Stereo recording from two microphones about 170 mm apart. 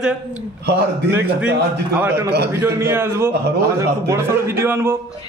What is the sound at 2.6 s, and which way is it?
Speech, 15° right (ahead or behind).